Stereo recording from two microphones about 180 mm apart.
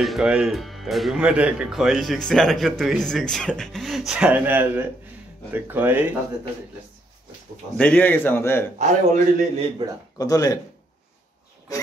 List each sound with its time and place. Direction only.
0.0 s speech: centre (ahead or behind)
7.7 s a man's voice: 5° left (ahead or behind)
8.7 s a man's voice: 40° right (ahead or behind)
10.1 s speech: 20° left (ahead or behind)